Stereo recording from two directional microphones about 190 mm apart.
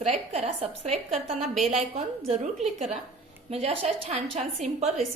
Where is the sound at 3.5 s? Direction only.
30° right (ahead or behind).